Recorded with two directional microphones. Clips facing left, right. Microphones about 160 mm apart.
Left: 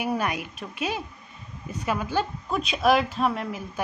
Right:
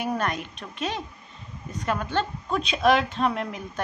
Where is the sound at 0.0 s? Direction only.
10° left (ahead or behind).